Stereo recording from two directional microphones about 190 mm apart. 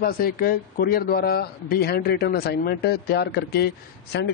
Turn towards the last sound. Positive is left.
turn(degrees=55)  # may be behind; listen again after turning